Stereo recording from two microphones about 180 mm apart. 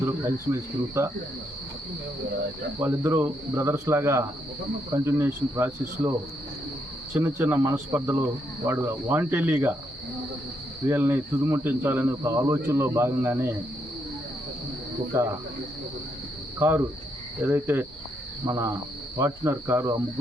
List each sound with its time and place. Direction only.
0.0 s speech: 15° right (ahead or behind)
2.8 s speech: 10° right (ahead or behind)
7.1 s speech: 15° right (ahead or behind)
10.8 s speech: 15° right (ahead or behind)
15.1 s speech: 15° right (ahead or behind)
16.6 s speech: 15° right (ahead or behind)